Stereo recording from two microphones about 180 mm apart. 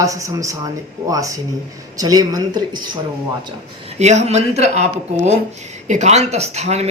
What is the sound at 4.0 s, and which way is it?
Speech, 40° right (ahead or behind).